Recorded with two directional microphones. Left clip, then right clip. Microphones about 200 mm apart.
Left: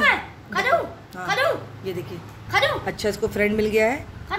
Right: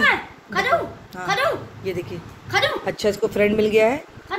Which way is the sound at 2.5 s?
20° left (ahead or behind).